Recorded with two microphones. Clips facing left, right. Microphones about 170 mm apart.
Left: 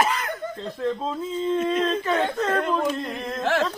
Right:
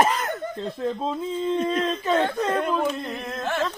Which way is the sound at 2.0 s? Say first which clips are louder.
Right 1 dB; 15° right (ahead or behind).